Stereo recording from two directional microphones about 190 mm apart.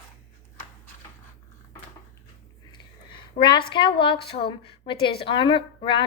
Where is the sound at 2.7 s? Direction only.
25° left (ahead or behind).